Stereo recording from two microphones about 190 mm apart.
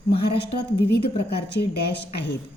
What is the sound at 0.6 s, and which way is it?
Speech, 60° left (ahead or behind).